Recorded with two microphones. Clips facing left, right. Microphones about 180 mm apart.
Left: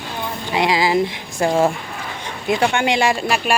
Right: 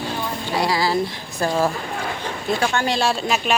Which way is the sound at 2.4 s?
15° left (ahead or behind).